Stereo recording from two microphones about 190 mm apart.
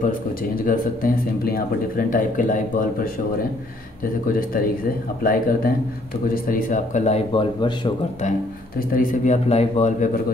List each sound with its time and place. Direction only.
0.0 s speech: 50° left (ahead or behind); by 7.9 s 25° left (ahead or behind)
8.2 s speech: 45° left (ahead or behind)